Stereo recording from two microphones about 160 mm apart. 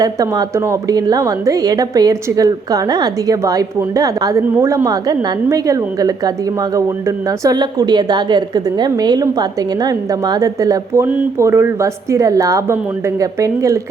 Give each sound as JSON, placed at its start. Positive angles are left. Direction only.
{"t": 0.0, "sound": "a woman's voice", "side_deg": -20}